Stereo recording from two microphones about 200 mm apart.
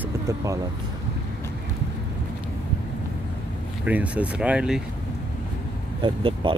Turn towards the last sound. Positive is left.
turn(degrees=-25)  # may be behind; listen again after turning